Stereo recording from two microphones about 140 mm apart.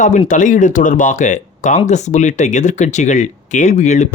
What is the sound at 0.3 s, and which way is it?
Speech, 65° left (ahead or behind).